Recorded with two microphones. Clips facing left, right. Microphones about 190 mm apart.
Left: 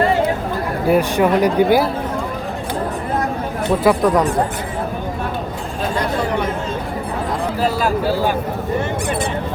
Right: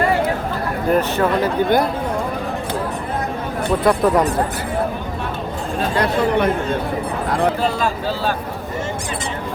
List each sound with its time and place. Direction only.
0.9 s speech: 10° left (ahead or behind)
3.8 s speech: 5° right (ahead or behind)
6.0 s speech: 60° right (ahead or behind)
7.6 s speech: 10° left (ahead or behind)